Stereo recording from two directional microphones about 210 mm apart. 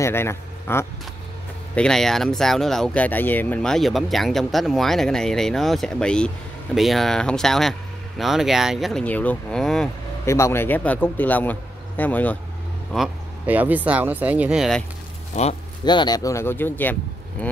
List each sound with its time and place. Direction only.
0.0 s speech: 10° left (ahead or behind)
10.2 s a man's voice: 15° left (ahead or behind)
12.9 s speech: 5° right (ahead or behind)
15.3 s speech: 35° left (ahead or behind)
15.8 s a man's voice: 20° left (ahead or behind)